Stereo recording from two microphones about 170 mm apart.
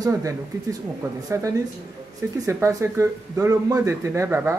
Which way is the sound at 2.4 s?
15° right (ahead or behind).